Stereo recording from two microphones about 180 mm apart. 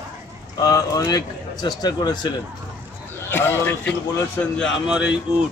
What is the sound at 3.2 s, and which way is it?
A man's voice, 10° left (ahead or behind).